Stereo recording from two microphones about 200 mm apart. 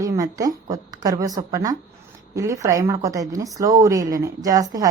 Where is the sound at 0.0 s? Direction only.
15° right (ahead or behind).